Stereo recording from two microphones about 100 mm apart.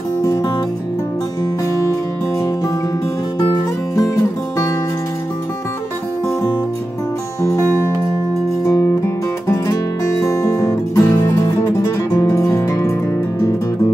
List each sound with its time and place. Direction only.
3.9 s music: 35° left (ahead or behind)
8.6 s music: 45° left (ahead or behind)
9.0 s music: 30° left (ahead or behind)